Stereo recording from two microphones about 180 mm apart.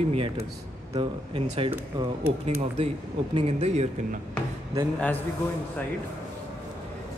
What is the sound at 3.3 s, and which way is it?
Speech, 35° right (ahead or behind).